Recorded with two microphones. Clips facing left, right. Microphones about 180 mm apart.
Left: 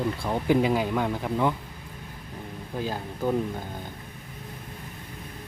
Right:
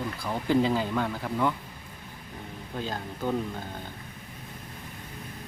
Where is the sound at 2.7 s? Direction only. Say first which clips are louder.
Left 3 dB; 10° left (ahead or behind).